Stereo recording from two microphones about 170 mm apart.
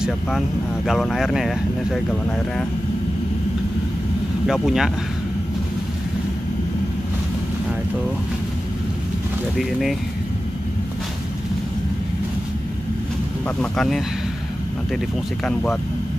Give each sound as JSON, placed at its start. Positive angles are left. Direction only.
{"t": 0.8, "sound": "speech", "side_deg": 0}
{"t": 4.5, "sound": "speech", "side_deg": -5}
{"t": 9.6, "sound": "speech", "side_deg": 0}
{"t": 13.6, "sound": "speech", "side_deg": 0}
{"t": 15.4, "sound": "speech", "side_deg": 5}